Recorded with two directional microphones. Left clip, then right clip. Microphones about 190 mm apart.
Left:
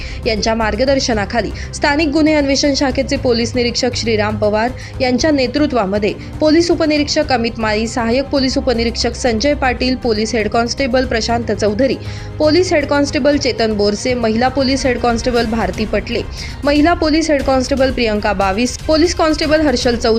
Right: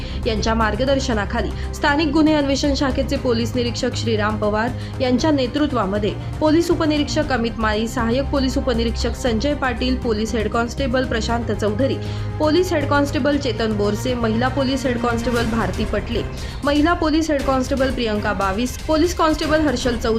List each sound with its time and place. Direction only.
0.4 s a woman's voice: 10° left (ahead or behind)